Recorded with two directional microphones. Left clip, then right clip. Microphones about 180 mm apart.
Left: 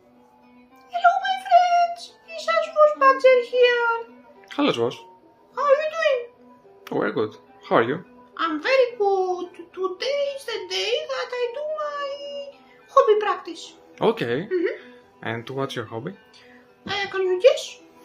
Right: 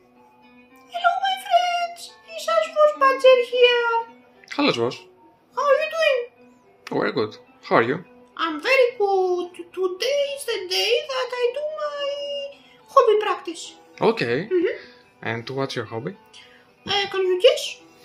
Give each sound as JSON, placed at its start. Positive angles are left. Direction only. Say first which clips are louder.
{"t": 0.9, "sound": "opera", "louder": "left 2 dB", "side_deg": -35}
{"t": 2.4, "sound": "a sound", "louder": "even", "side_deg": -30}
{"t": 4.5, "sound": "speech", "louder": "right 1 dB", "side_deg": 0}
{"t": 5.5, "sound": "a sound", "louder": "even", "side_deg": -35}
{"t": 6.8, "sound": "speech", "louder": "right 1 dB", "side_deg": -5}
{"t": 8.4, "sound": "a sound", "louder": "right 1 dB", "side_deg": -35}
{"t": 12.9, "sound": "music", "louder": "right 1 dB", "side_deg": -35}
{"t": 13.9, "sound": "speech", "louder": "right 1 dB", "side_deg": 0}
{"t": 16.8, "sound": "child singing", "louder": "right 2 dB", "side_deg": -45}